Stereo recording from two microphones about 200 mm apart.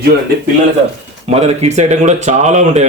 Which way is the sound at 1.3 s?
30° right (ahead or behind).